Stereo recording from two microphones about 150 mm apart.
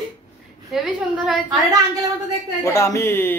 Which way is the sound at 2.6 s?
20° left (ahead or behind).